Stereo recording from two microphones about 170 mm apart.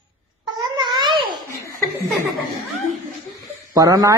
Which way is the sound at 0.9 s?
30° right (ahead or behind).